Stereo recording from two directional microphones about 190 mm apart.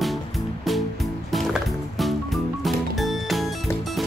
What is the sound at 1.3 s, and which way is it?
Music, centre (ahead or behind).